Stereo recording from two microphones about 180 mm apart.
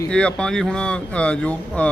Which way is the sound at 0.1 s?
5° left (ahead or behind).